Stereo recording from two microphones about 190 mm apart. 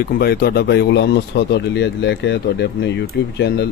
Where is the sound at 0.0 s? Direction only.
55° left (ahead or behind).